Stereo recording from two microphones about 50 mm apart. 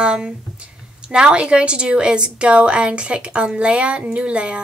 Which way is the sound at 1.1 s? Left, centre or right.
Centre.